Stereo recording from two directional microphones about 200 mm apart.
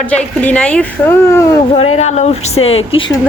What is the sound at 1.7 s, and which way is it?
Speech, 35° left (ahead or behind).